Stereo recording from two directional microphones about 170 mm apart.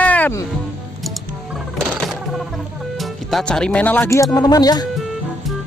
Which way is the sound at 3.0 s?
Centre (ahead or behind).